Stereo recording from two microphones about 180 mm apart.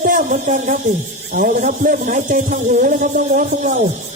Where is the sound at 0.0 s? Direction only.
50° right (ahead or behind).